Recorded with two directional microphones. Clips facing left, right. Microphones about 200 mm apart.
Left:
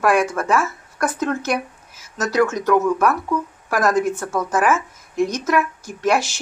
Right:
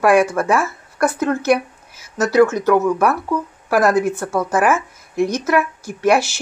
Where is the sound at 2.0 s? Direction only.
10° right (ahead or behind).